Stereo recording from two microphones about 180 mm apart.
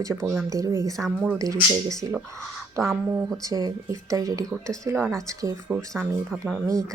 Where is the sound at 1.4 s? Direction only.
15° right (ahead or behind).